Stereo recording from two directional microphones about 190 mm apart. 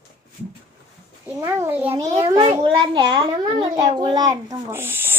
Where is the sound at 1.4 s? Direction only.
10° right (ahead or behind).